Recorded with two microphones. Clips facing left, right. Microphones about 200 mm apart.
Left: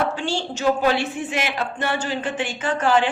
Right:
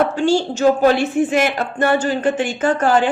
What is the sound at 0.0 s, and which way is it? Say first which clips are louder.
Speech: right 8 dB; 45° right (ahead or behind).